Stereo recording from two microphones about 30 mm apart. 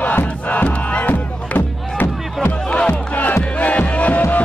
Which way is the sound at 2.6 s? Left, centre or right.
Left.